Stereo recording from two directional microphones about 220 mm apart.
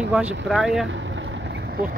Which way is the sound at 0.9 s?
55° right (ahead or behind).